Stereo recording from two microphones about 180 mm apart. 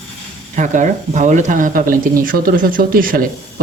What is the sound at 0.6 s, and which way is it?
Speech, 45° right (ahead or behind).